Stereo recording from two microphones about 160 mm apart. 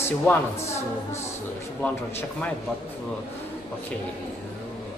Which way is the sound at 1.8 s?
10° left (ahead or behind).